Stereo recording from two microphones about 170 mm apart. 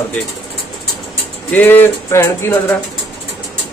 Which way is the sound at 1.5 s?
10° left (ahead or behind).